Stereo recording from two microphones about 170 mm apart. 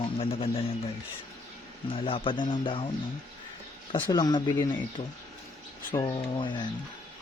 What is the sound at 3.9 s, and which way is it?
Speech, 25° left (ahead or behind).